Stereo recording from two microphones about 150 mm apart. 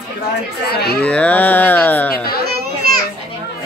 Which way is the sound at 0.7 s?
90° left.